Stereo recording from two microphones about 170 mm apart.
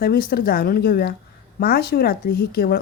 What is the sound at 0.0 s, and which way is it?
Speech, 60° left (ahead or behind).